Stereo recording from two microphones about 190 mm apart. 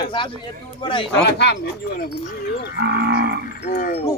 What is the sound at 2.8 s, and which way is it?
Livestock, 60° right (ahead or behind).